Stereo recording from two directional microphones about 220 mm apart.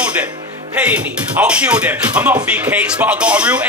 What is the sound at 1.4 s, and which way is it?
Speech, 5° right (ahead or behind).